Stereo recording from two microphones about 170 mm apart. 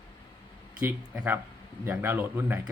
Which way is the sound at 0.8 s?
10° right (ahead or behind).